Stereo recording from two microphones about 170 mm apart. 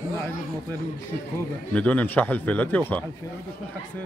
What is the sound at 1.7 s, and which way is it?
A man's voice, 10° left (ahead or behind).